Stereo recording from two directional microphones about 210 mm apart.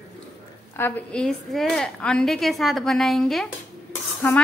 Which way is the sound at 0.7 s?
10° left (ahead or behind).